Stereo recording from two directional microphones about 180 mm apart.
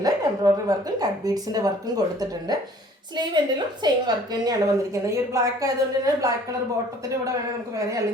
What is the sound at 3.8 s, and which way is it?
A woman's voice, 20° right (ahead or behind).